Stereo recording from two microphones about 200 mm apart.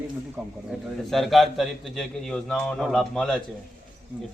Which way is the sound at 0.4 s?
5° right (ahead or behind).